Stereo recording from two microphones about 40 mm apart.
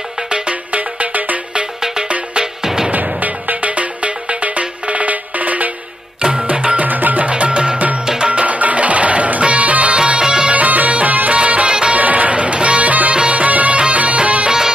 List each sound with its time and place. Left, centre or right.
0.7 s music: right
1.6 s music: centre
2.9 s music: right
6.9 s music: right
7.2 s music: right
9.9 s music: right
10.5 s music: right
12.0 s music: right
13.1 s music: right